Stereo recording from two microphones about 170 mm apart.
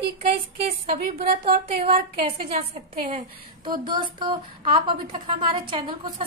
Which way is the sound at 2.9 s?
40° right (ahead or behind).